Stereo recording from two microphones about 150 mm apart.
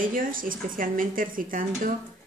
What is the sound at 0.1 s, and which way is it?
A woman's voice, 70° right (ahead or behind).